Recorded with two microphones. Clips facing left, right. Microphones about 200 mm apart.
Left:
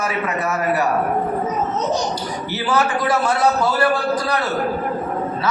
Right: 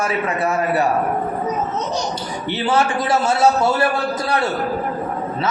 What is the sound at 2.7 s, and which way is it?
A man's voice, 25° right (ahead or behind).